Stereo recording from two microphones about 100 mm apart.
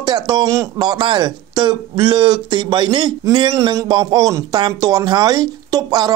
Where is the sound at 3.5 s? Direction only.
40° right (ahead or behind).